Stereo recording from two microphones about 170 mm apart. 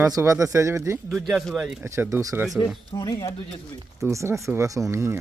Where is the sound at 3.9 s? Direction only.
15° right (ahead or behind).